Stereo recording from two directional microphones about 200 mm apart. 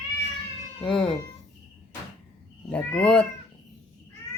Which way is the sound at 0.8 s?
5° left (ahead or behind).